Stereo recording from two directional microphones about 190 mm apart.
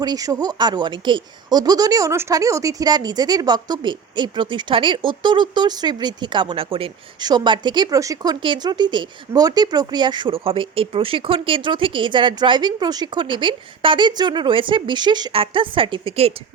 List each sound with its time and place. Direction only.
0.0 s speech: 20° right (ahead or behind)